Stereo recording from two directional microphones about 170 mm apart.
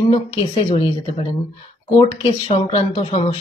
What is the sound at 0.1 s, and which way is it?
Speech, 35° left (ahead or behind).